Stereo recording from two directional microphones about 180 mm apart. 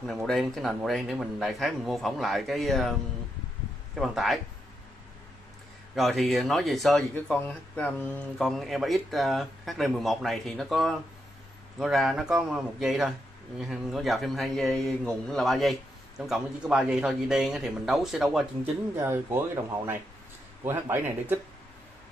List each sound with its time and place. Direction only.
0.0 s speech: centre (ahead or behind)
3.9 s speech: centre (ahead or behind)
5.9 s speech: centre (ahead or behind)
18.9 s speech: 15° right (ahead or behind)